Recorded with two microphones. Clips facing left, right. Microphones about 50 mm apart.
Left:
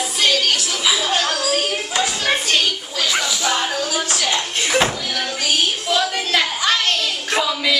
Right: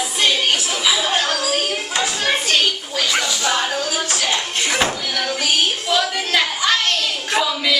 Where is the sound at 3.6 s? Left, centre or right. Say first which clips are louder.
Even; right.